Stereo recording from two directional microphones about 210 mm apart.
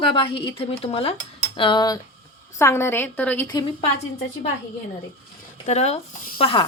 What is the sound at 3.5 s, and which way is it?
Speech, 20° left (ahead or behind).